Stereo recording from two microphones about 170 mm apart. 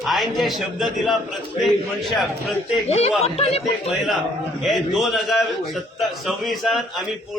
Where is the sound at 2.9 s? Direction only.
35° left (ahead or behind).